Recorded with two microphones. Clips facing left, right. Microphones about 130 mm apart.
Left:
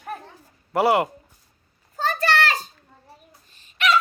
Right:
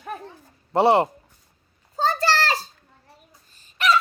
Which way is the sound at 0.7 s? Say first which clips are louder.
Right 2 dB; 30° right (ahead or behind).